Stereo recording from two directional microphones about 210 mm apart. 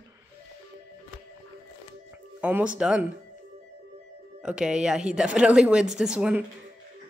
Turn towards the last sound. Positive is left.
turn(degrees=-5)  # may be behind; listen again after turning